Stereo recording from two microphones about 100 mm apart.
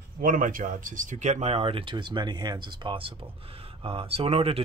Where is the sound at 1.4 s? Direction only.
80° right.